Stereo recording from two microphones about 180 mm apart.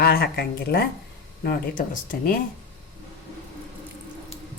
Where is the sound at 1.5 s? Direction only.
50° left (ahead or behind).